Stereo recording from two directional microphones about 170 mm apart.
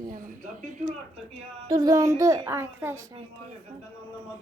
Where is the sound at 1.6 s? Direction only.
20° right (ahead or behind).